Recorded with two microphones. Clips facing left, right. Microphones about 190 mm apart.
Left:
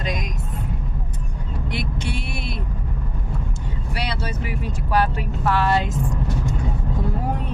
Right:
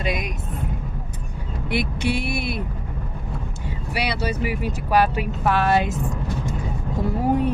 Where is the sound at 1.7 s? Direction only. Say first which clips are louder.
Right 6 dB; 10° right (ahead or behind).